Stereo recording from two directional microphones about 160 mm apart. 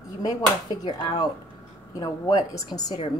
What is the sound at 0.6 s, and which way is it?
A woman's voice, 25° left (ahead or behind).